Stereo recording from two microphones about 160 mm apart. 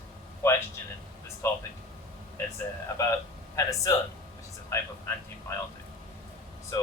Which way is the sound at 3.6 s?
20° left (ahead or behind).